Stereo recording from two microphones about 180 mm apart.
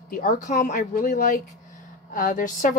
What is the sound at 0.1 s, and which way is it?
Speech, 50° left (ahead or behind).